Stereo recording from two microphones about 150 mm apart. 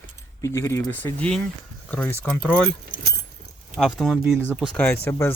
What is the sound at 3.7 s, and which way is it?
Speech, centre (ahead or behind).